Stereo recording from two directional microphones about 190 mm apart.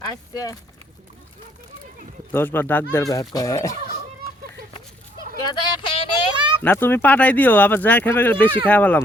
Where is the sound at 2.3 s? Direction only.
10° left (ahead or behind).